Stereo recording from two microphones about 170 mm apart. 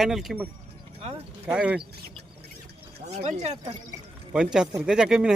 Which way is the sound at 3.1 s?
40° right (ahead or behind).